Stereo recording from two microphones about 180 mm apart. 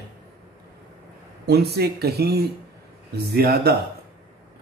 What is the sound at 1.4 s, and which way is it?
Speech, 60° right (ahead or behind).